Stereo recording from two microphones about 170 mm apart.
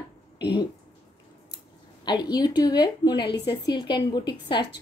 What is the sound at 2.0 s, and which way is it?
A woman's voice, 25° left (ahead or behind).